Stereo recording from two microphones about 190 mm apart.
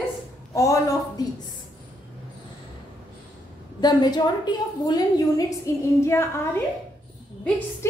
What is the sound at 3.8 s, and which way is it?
A woman's voice, 20° left (ahead or behind).